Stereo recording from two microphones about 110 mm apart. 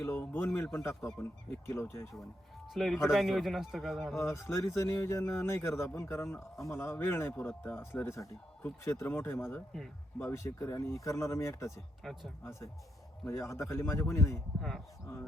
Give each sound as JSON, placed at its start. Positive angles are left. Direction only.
{"t": 0.0, "sound": "speech", "side_deg": 20}
{"t": 2.7, "sound": "a man's voice", "side_deg": 0}
{"t": 4.2, "sound": "speech", "side_deg": 25}
{"t": 12.0, "sound": "a man's voice", "side_deg": 0}
{"t": 13.2, "sound": "speech", "side_deg": 25}